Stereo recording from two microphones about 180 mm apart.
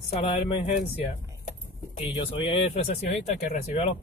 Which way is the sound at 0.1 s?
35° left (ahead or behind).